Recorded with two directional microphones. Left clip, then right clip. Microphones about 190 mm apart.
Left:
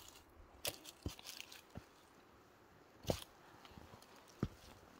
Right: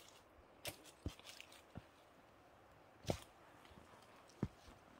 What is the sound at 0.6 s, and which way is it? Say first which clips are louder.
Biting: left 5 dB; 50° left (ahead or behind).